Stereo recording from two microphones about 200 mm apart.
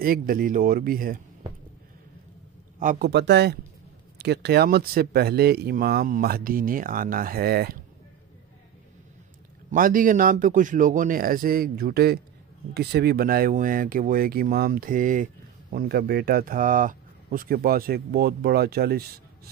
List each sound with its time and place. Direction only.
0.0 s speech: 45° right (ahead or behind)
2.8 s speech: 40° right (ahead or behind)
3.1 s speech: 60° right (ahead or behind)
9.7 s speech: 45° right (ahead or behind)